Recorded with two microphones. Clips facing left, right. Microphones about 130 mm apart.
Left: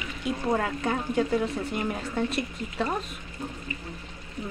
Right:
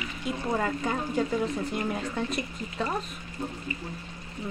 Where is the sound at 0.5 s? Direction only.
Centre (ahead or behind).